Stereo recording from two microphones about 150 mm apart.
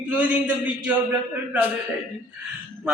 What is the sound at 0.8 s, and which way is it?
Chant, 10° right (ahead or behind).